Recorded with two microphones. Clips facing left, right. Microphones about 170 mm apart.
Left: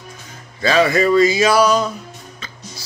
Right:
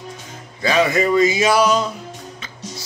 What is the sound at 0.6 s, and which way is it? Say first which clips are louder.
Speech: left 2 dB; 15° right (ahead or behind).